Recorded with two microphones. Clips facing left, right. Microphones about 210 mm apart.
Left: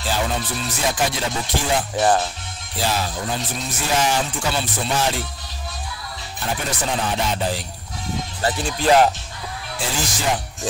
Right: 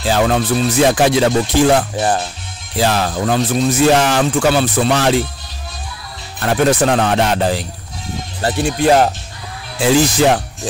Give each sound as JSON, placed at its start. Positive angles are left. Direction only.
{"t": 0.0, "sound": "speech", "side_deg": -85}
{"t": 6.4, "sound": "speech", "side_deg": -80}
{"t": 8.5, "sound": "speech", "side_deg": -65}